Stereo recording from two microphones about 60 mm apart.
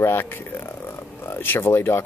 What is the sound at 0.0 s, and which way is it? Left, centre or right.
Speech, left.